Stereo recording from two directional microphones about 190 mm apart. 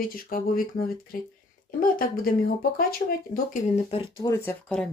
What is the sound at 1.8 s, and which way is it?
Speech, 50° left (ahead or behind).